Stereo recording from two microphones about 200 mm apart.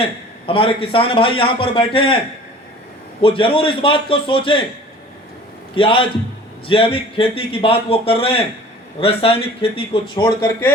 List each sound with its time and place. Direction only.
0.0 s a man's voice: 25° left (ahead or behind)
3.2 s a man's voice: 25° left (ahead or behind)
5.7 s a man's voice: 25° left (ahead or behind)